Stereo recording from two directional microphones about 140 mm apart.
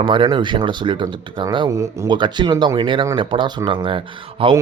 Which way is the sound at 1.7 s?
20° right (ahead or behind).